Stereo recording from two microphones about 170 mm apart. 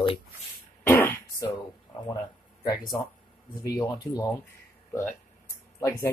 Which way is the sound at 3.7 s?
20° left (ahead or behind).